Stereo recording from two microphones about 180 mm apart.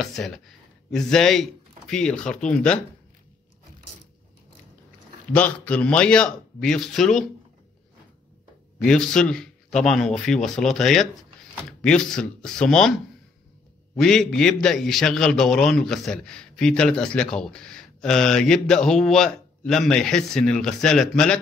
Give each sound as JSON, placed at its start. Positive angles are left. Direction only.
{"t": 0.0, "sound": "a man's voice", "side_deg": 0}
{"t": 5.3, "sound": "a man's voice", "side_deg": 10}
{"t": 8.8, "sound": "a man's voice", "side_deg": 5}
{"t": 13.9, "sound": "a man's voice", "side_deg": 0}